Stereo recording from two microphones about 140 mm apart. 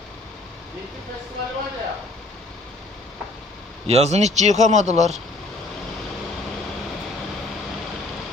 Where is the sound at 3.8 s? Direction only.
50° right (ahead or behind).